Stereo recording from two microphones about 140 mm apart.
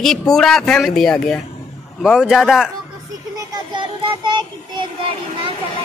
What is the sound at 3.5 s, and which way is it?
Child singing, 35° right (ahead or behind).